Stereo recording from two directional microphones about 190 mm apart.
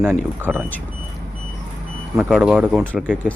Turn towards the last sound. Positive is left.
turn(degrees=-5)  # may be behind; listen again after turning